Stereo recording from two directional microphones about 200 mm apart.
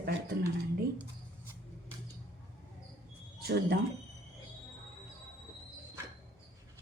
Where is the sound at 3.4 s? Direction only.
50° right (ahead or behind).